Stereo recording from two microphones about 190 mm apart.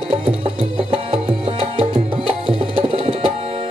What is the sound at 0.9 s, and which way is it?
Music, 30° right (ahead or behind).